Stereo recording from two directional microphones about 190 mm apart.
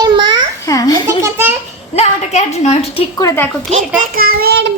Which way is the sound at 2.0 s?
35° left (ahead or behind).